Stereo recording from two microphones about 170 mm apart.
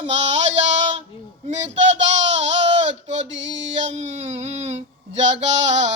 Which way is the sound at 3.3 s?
90° right.